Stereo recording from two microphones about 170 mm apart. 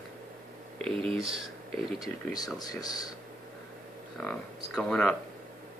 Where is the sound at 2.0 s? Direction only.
20° left (ahead or behind).